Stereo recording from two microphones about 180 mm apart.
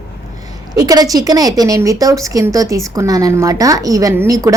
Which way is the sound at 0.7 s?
20° right (ahead or behind).